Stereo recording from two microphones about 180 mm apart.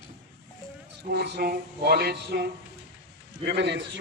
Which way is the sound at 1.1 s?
65° right (ahead or behind).